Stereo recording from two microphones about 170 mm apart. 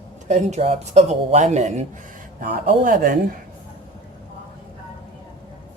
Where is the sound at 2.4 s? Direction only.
55° right (ahead or behind).